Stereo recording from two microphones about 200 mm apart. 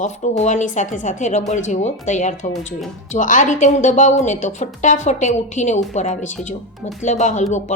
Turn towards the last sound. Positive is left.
turn(degrees=35)  # may be behind; listen again after turning